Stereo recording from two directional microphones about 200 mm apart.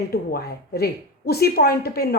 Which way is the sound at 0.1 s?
50° left (ahead or behind).